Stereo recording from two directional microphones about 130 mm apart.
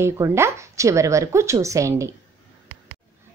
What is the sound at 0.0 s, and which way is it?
A woman's voice, 20° right (ahead or behind).